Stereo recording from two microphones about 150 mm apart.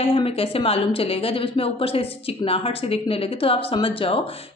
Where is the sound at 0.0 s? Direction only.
40° left (ahead or behind).